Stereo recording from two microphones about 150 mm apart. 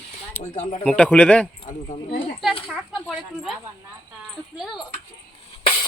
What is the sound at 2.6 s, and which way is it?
Speech, centre (ahead or behind).